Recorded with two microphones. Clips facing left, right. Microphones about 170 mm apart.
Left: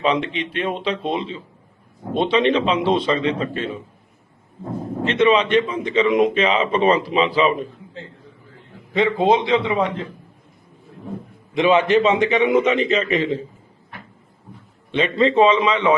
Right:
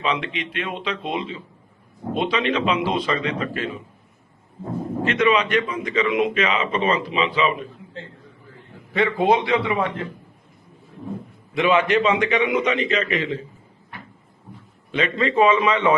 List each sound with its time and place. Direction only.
0.0 s a man's voice: 35° left (ahead or behind)
5.0 s speech: 30° left (ahead or behind)
8.9 s a man's voice: 20° left (ahead or behind)
11.6 s speech: 30° left (ahead or behind)
14.9 s a man's voice: 30° left (ahead or behind)